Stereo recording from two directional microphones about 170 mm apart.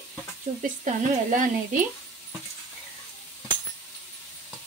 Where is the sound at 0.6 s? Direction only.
50° right (ahead or behind).